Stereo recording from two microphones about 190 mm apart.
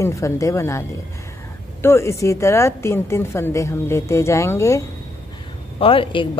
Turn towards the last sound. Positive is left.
turn(degrees=25)  # may be behind; listen again after turning